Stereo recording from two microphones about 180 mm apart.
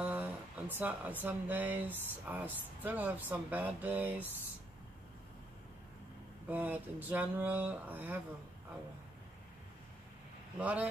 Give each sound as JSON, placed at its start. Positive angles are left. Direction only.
{"t": 0.0, "sound": "speech", "side_deg": -10}
{"t": 6.5, "sound": "speech", "side_deg": -10}
{"t": 10.6, "sound": "speech", "side_deg": -10}